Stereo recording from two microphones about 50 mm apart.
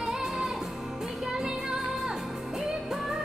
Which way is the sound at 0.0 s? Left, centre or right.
Centre.